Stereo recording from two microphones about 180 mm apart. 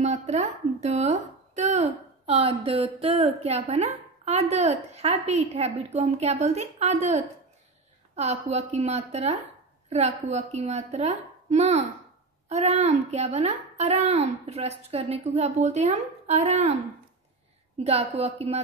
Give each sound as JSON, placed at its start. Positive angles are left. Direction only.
{"t": 0.0, "sound": "speech", "side_deg": -40}
{"t": 8.2, "sound": "speech", "side_deg": -40}
{"t": 17.8, "sound": "speech", "side_deg": -35}